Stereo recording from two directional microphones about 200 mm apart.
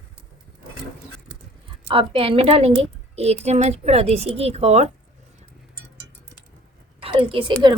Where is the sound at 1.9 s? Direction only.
25° right (ahead or behind).